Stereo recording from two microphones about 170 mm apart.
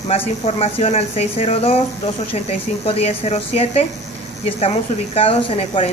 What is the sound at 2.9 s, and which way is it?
A woman's voice, 35° left (ahead or behind).